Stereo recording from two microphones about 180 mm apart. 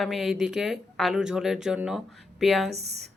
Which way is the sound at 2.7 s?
35° right (ahead or behind).